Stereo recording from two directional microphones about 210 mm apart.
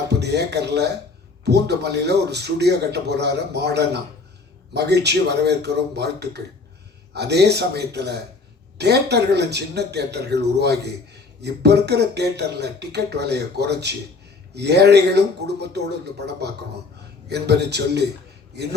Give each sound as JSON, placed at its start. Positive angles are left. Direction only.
{"t": 0.1, "sound": "a man's voice", "side_deg": -55}